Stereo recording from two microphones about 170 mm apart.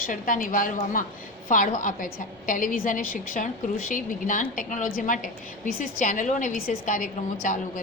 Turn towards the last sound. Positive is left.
turn(degrees=50)  # may be behind; listen again after turning